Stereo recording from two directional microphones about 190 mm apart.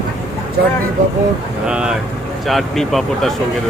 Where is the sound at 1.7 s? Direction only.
5° right (ahead or behind).